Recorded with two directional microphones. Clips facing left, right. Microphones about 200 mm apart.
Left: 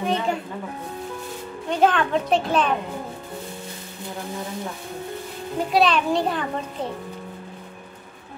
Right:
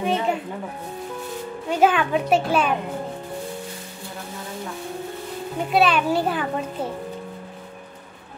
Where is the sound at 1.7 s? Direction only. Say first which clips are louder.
Right 1 dB; 5° right (ahead or behind).